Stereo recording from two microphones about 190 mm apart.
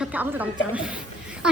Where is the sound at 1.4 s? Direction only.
5° right (ahead or behind).